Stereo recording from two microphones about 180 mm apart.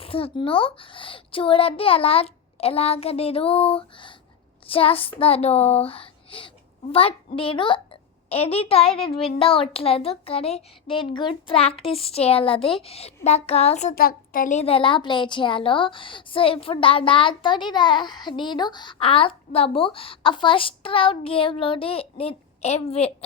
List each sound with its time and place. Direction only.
0.0 s a child's voice: 30° left (ahead or behind)
13.9 s a child's voice: 55° left (ahead or behind)
14.6 s a woman's voice: 30° left (ahead or behind)